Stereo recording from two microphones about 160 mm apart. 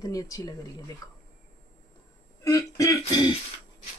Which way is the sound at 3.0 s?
30° left (ahead or behind).